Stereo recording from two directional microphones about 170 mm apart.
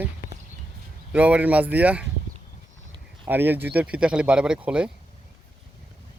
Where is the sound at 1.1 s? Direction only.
10° right (ahead or behind).